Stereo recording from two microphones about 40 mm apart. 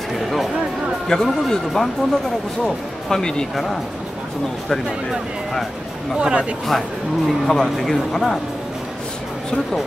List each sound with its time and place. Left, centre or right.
1.0 s speech: centre
6.1 s speech: right
7.2 s speech: centre